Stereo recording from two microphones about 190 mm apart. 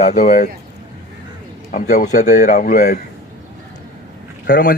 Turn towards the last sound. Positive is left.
turn(degrees=55)  # may be behind; listen again after turning